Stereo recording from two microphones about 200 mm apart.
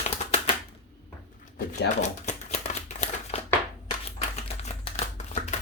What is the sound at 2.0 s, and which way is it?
Shuffling cards, 35° left (ahead or behind).